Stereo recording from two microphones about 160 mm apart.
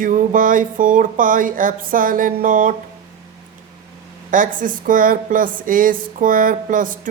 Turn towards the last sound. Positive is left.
turn(degrees=-55)  # may be behind; listen again after turning